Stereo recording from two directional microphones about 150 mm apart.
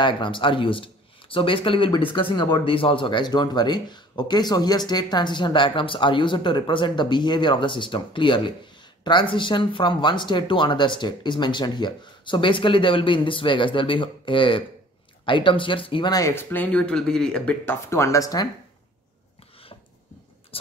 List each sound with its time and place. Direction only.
0.0 s speech: 35° left (ahead or behind)